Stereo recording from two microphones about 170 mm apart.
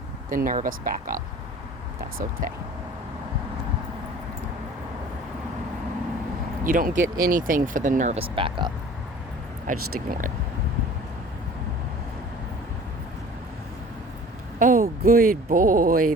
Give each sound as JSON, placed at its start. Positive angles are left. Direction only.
{"t": 0.3, "sound": "speech", "side_deg": -55}
{"t": 6.7, "sound": "speech", "side_deg": -55}
{"t": 9.6, "sound": "speech", "side_deg": -55}
{"t": 14.6, "sound": "speech", "side_deg": -55}